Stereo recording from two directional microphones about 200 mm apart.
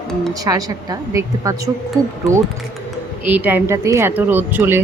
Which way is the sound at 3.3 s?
10° right (ahead or behind).